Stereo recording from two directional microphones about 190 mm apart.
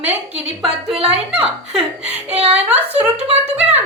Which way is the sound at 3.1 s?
30° right (ahead or behind).